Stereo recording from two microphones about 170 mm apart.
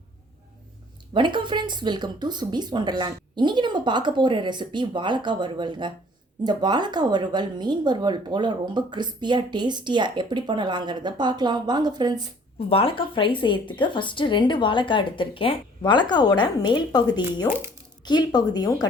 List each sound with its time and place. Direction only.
1.1 s speech: 30° right (ahead or behind)
12.5 s a woman's voice: 35° left (ahead or behind)